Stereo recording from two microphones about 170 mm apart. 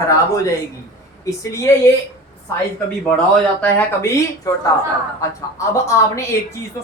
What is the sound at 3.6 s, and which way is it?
A woman's voice, 10° left (ahead or behind).